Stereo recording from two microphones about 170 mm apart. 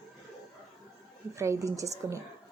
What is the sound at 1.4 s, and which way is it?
Speech, 20° right (ahead or behind).